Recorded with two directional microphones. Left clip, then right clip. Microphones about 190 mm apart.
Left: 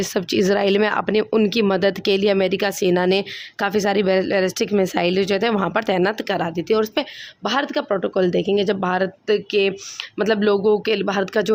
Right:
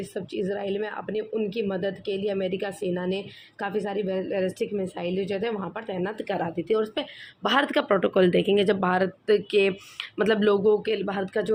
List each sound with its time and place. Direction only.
0.1 s speech: 55° left (ahead or behind); by 7.1 s 35° left (ahead or behind)
7.4 s speech: 10° left (ahead or behind); by 11.5 s 35° left (ahead or behind)